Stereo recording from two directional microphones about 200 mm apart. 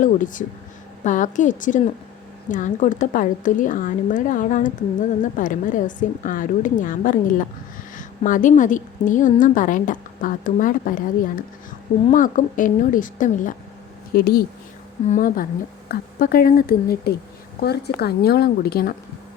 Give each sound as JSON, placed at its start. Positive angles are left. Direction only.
{"t": 0.0, "sound": "a woman's voice", "side_deg": 40}